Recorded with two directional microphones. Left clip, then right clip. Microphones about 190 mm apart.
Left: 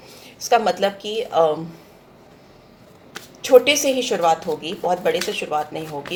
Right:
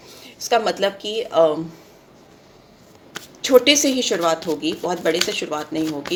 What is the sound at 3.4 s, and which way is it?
Speech, 50° right (ahead or behind).